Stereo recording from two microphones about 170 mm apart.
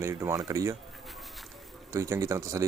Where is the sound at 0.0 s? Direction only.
15° right (ahead or behind).